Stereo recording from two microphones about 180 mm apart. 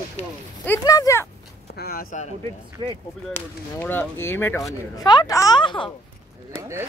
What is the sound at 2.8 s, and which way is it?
Speech, 30° right (ahead or behind).